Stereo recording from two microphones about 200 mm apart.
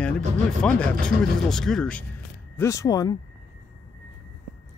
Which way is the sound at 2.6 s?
15° left (ahead or behind).